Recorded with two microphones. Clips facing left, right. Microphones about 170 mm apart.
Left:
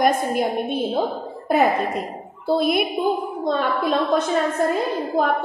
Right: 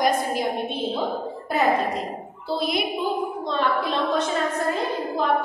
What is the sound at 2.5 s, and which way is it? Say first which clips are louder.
A woman's voice: left 6 dB; 50° left (ahead or behind).